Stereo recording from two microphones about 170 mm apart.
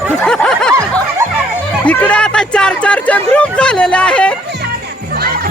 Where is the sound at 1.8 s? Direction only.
5° left (ahead or behind).